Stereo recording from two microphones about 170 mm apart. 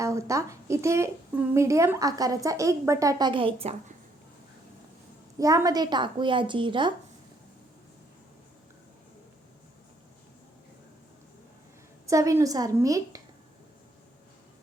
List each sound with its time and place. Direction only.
0.0 s speech: 20° right (ahead or behind); by 3.9 s 35° right (ahead or behind)
5.4 s speech: 20° right (ahead or behind)
12.0 s speech: 20° right (ahead or behind)